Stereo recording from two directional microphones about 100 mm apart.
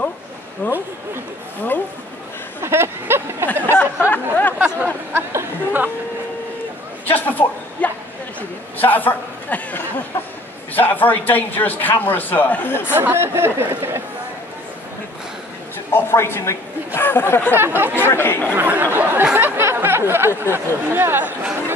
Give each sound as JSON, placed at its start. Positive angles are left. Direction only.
{"t": 0.6, "sound": "speech", "side_deg": 15}
{"t": 2.6, "sound": "a sound", "side_deg": -25}
{"t": 3.7, "sound": "a sound", "side_deg": 20}
{"t": 5.1, "sound": "chatter", "side_deg": -25}
{"t": 7.1, "sound": "a sound", "side_deg": 15}
{"t": 10.7, "sound": "a man's voice", "side_deg": 20}
{"t": 12.9, "sound": "speech", "side_deg": -20}
{"t": 15.9, "sound": "a woman's voice", "side_deg": 25}
{"t": 17.6, "sound": "speech", "side_deg": -20}
{"t": 17.9, "sound": "speech", "side_deg": 25}
{"t": 18.5, "sound": "speech", "side_deg": -15}
{"t": 19.3, "sound": "a sound", "side_deg": -20}
{"t": 20.5, "sound": "speech", "side_deg": -25}